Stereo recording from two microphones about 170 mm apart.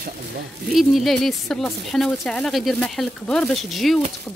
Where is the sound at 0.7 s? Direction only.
Centre (ahead or behind).